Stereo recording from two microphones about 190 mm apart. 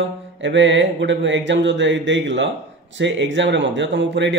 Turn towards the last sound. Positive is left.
turn(degrees=-70)  # may be behind; listen again after turning